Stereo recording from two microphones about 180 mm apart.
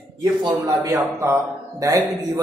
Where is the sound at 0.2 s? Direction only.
20° right (ahead or behind).